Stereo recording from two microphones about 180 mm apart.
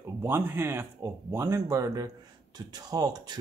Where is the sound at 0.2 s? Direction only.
10° right (ahead or behind).